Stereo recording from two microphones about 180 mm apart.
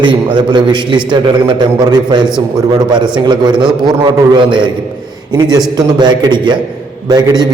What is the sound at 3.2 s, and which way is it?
A man's voice, 25° right (ahead or behind).